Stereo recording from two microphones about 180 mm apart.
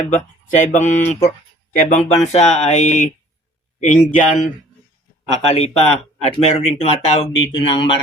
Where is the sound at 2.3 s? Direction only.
40° left (ahead or behind).